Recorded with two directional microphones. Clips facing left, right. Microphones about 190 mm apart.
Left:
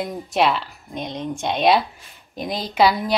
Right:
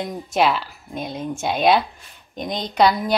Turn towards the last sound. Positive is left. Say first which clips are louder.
# even
turn(degrees=0)  # may be behind; listen again after turning